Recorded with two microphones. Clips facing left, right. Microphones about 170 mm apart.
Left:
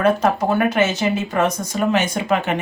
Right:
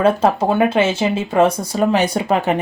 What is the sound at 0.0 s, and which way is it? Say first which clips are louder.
Speech: right 2 dB; 30° right (ahead or behind).